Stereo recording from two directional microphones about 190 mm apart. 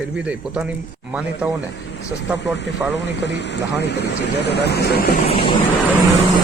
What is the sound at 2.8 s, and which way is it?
Speech, 5° right (ahead or behind).